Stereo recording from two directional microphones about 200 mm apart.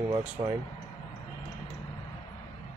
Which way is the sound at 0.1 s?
15° right (ahead or behind).